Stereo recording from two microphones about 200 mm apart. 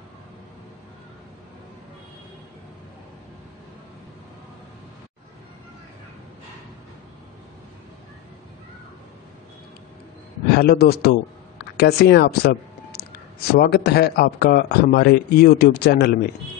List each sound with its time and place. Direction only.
10.5 s a man's voice: 50° left (ahead or behind)